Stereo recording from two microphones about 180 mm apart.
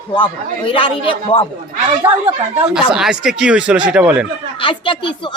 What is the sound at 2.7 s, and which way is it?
Speech, 5° right (ahead or behind).